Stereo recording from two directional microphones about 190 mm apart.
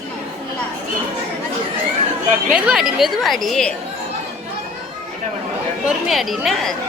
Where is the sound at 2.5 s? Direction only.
5° right (ahead or behind).